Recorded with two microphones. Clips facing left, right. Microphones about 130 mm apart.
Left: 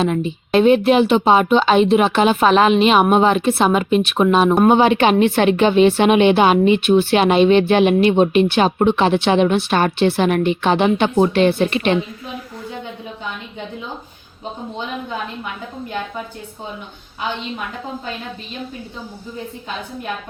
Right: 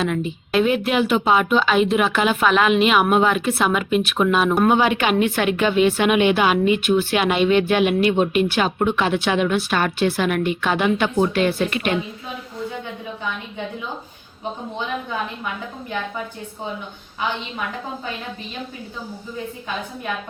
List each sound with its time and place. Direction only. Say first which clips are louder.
0.0 s speech: left 4 dB; 25° left (ahead or behind)